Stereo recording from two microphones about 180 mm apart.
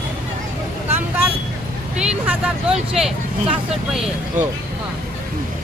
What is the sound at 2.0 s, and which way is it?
Speech, 5° right (ahead or behind).